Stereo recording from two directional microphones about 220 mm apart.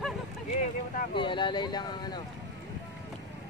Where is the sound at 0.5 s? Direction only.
35° left (ahead or behind).